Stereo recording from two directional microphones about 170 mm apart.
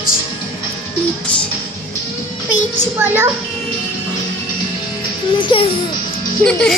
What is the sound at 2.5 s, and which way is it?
Speech, 15° right (ahead or behind).